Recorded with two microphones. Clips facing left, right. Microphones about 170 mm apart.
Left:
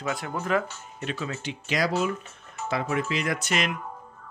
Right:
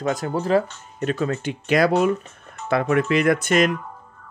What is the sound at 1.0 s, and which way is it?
Speech, 45° right (ahead or behind).